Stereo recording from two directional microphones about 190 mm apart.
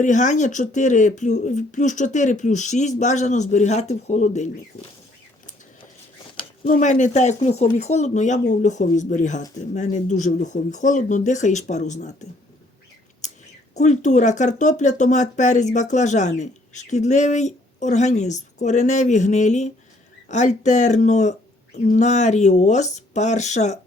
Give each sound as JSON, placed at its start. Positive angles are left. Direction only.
{"t": 0.0, "sound": "speech", "side_deg": 40}
{"t": 6.7, "sound": "speech", "side_deg": 40}
{"t": 13.2, "sound": "a sound", "side_deg": 40}
{"t": 13.7, "sound": "speech", "side_deg": 40}